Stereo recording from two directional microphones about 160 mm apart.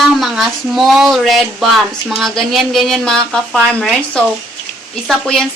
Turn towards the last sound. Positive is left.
turn(degrees=5)  # may be behind; listen again after turning